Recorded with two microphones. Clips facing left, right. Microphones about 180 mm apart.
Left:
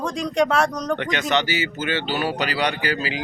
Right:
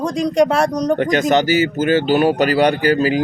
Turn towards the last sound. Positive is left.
turn(degrees=-45)  # may be behind; listen again after turning